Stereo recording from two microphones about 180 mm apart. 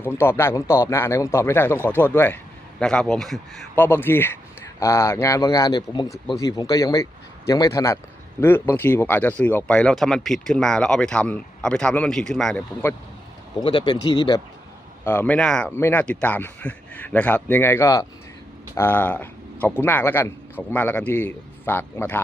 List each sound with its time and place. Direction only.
0.0 s a man's voice: 15° left (ahead or behind)
3.8 s a man's voice: 10° left (ahead or behind)
13.6 s a man's voice: 25° left (ahead or behind)
15.0 s a man's voice: 10° left (ahead or behind)